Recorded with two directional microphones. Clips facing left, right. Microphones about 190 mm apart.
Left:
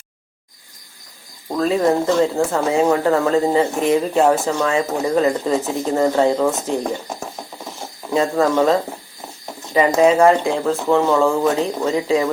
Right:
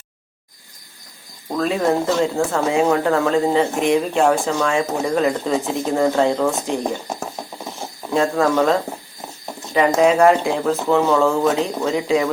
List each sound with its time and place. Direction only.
1.5 s speech: centre (ahead or behind)
8.1 s speech: 5° left (ahead or behind)
9.9 s speech: centre (ahead or behind)